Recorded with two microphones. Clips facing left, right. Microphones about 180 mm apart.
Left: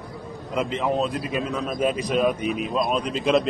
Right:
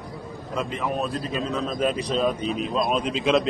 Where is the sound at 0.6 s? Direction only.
20° left (ahead or behind).